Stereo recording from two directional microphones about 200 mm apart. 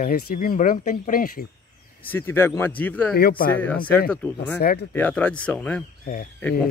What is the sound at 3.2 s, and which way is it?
Speech, 50° left (ahead or behind).